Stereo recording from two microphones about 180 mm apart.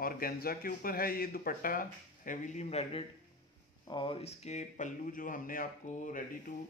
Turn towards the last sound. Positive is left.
turn(degrees=45)  # may be behind; listen again after turning